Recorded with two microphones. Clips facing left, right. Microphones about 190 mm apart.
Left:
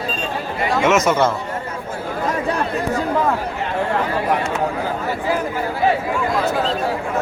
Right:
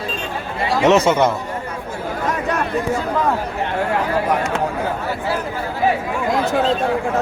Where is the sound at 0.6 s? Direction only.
35° right (ahead or behind).